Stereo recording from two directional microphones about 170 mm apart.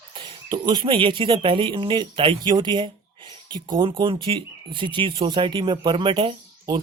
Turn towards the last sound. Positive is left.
turn(degrees=-30)  # may be behind; listen again after turning